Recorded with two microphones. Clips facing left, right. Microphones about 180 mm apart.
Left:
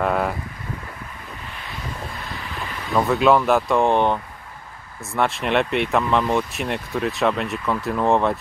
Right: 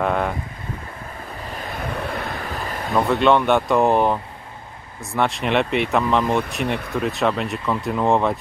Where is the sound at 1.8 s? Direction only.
60° right (ahead or behind); by 2.9 s 45° right (ahead or behind).